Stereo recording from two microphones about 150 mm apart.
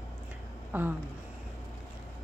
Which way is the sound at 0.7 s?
10° right (ahead or behind).